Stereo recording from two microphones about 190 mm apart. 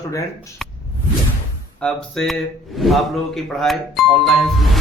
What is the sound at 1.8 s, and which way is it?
A man's voice, 5° left (ahead or behind).